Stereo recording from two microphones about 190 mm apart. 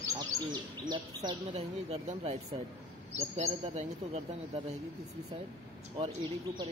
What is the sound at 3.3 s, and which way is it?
Speech, 35° right (ahead or behind).